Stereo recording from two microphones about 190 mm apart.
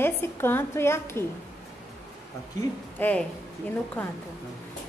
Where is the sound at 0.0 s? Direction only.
10° left (ahead or behind).